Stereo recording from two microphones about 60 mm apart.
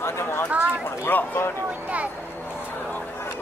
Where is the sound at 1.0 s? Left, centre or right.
Left.